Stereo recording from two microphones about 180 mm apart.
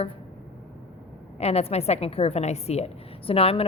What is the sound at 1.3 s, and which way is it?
A woman's voice, 35° left (ahead or behind).